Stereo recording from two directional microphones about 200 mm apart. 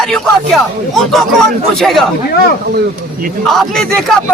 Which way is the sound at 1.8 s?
Centre (ahead or behind).